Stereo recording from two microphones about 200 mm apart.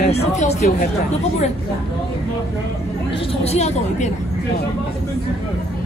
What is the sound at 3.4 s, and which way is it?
Speech, 35° left (ahead or behind).